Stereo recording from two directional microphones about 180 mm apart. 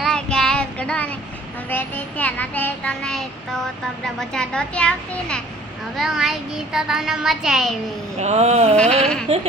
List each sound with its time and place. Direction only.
0.0 s child singing: 5° left (ahead or behind)
4.0 s a child's voice: 5° left (ahead or behind)
8.2 s a sound: 40° right (ahead or behind)
8.7 s a child's voice: 5° left (ahead or behind)